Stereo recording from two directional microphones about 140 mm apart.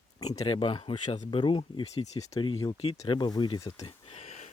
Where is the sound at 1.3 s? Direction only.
35° left (ahead or behind).